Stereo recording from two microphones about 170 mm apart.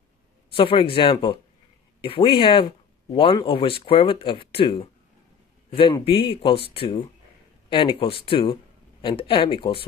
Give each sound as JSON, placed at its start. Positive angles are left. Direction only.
{"t": 0.6, "sound": "speech", "side_deg": 30}
{"t": 6.0, "sound": "speech", "side_deg": 30}